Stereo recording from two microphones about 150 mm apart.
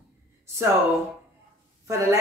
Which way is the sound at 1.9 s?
20° right (ahead or behind).